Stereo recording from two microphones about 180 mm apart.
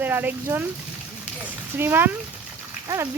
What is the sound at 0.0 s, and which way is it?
Speech, 10° right (ahead or behind).